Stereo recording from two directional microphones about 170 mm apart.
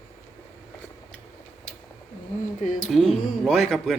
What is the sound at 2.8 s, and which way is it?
A man's voice, centre (ahead or behind).